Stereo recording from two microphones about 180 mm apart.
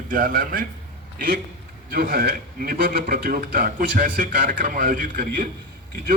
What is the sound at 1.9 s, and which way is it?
A man's voice, 55° right (ahead or behind).